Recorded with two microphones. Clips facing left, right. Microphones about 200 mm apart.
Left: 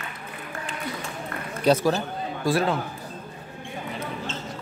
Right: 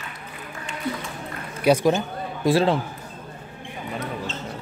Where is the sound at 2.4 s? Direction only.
25° right (ahead or behind).